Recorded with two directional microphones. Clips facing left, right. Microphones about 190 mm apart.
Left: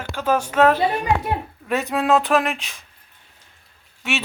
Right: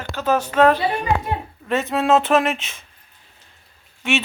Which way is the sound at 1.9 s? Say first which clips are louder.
Right 2 dB; centre (ahead or behind).